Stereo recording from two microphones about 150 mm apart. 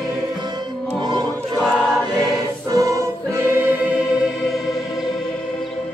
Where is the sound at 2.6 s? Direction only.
20° right (ahead or behind).